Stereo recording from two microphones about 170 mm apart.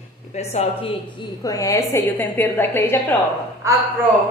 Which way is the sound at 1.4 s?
20° left (ahead or behind).